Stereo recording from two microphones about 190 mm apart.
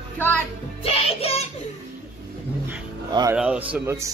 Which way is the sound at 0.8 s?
30° left (ahead or behind).